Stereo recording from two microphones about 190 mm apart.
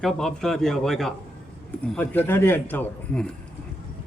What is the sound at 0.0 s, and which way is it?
A man's voice, centre (ahead or behind).